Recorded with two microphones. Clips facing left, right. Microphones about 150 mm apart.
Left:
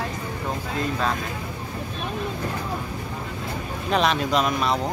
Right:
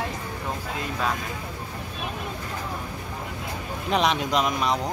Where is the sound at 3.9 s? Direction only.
15° right (ahead or behind).